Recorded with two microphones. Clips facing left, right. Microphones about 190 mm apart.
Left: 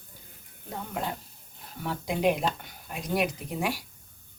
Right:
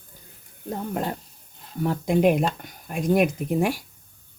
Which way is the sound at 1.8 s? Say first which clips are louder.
Right 6 dB; 50° right (ahead or behind).